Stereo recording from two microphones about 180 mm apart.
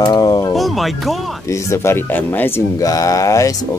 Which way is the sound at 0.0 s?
20° left (ahead or behind).